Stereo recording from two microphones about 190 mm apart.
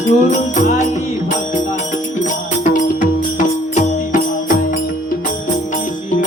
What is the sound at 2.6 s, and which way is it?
Music, 40° left (ahead or behind).